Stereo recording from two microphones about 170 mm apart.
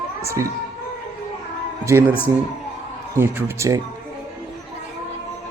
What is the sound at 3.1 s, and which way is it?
Speech, 15° right (ahead or behind).